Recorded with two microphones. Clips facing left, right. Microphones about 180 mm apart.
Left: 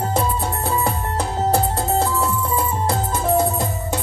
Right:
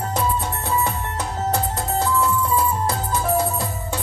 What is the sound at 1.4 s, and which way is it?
Music, 30° left (ahead or behind).